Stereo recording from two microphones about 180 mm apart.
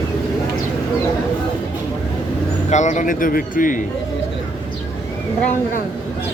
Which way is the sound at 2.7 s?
40° left (ahead or behind).